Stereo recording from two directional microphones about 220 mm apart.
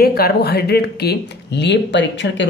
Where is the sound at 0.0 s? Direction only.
45° left (ahead or behind).